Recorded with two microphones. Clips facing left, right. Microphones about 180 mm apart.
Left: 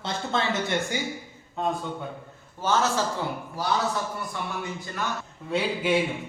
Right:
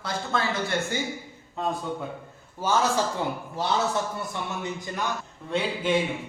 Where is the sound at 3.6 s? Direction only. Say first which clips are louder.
Even; 25° right (ahead or behind).